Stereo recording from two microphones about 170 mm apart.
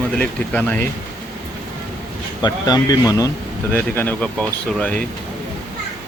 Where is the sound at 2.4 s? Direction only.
25° left (ahead or behind); by 5.0 s 10° left (ahead or behind).